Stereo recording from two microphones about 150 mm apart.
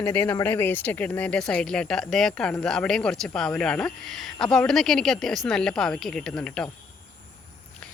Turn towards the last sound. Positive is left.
turn(degrees=5)  # may be behind; listen again after turning